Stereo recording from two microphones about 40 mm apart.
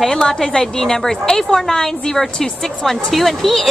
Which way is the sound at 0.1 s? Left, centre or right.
Centre.